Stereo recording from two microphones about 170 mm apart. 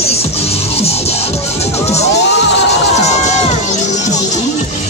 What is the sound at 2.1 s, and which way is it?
Crowd, 90° left.